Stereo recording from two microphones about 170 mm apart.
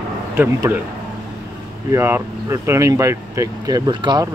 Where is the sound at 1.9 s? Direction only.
15° right (ahead or behind).